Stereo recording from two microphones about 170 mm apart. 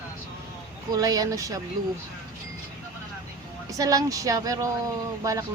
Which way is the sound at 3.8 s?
20° right (ahead or behind).